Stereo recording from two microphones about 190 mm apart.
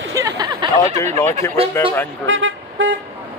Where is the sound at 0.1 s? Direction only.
15° right (ahead or behind).